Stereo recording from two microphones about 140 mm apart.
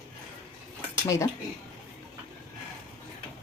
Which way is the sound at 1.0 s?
20° left (ahead or behind).